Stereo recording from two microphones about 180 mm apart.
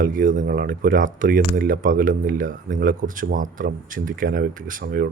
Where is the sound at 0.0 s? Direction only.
50° right (ahead or behind).